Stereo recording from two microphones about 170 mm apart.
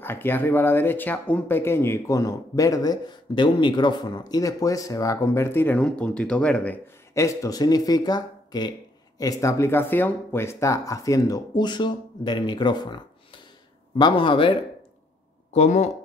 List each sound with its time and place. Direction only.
0.0 s speech: 10° left (ahead or behind); by 14.5 s 30° left (ahead or behind)
15.5 s speech: 40° left (ahead or behind)